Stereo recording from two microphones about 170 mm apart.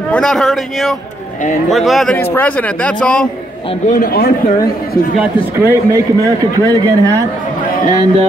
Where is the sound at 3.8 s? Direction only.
55° left (ahead or behind).